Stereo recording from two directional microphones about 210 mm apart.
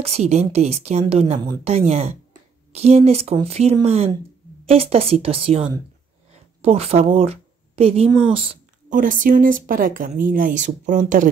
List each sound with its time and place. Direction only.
0.0 s a woman's voice: 30° right (ahead or behind)
8.9 s speech: 40° right (ahead or behind)